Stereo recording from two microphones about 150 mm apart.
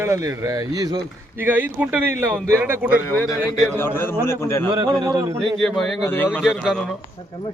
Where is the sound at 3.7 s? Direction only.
15° left (ahead or behind).